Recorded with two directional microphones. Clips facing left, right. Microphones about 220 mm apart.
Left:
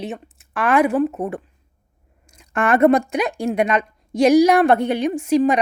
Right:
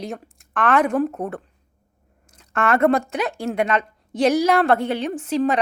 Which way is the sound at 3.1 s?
15° left (ahead or behind).